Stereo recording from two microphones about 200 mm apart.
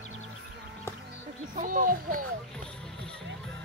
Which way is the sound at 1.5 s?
40° right (ahead or behind).